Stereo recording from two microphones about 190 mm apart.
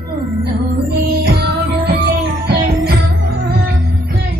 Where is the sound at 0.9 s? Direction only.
55° right (ahead or behind).